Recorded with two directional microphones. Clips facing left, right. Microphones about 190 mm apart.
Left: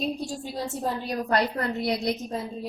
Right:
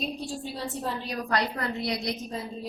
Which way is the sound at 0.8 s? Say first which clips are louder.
Left 5 dB; 45° left (ahead or behind).